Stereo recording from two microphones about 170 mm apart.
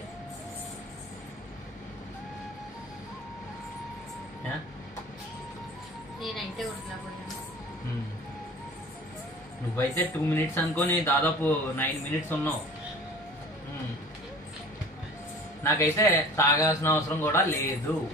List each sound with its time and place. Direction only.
6.2 s music: centre (ahead or behind)
9.8 s speech: 15° left (ahead or behind)
15.6 s speech: 15° left (ahead or behind)